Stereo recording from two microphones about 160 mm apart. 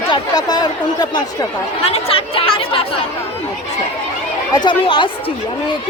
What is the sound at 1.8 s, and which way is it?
Speech, 35° left (ahead or behind).